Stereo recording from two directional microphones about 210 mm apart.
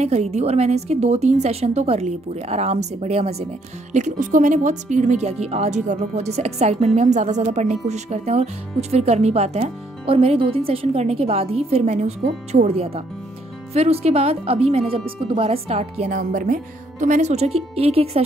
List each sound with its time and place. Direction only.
0.0 s speech: 30° right (ahead or behind)